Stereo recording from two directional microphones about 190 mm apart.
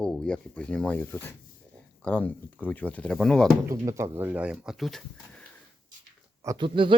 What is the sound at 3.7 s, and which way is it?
Speech, 15° right (ahead or behind).